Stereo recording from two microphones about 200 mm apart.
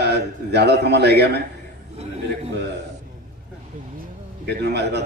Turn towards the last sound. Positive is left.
turn(degrees=-55)  # may be behind; listen again after turning